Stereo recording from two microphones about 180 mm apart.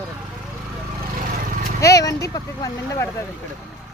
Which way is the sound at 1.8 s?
20° left (ahead or behind).